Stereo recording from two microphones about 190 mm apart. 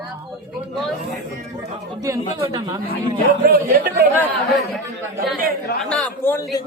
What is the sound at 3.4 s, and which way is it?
Speech, 50° right (ahead or behind).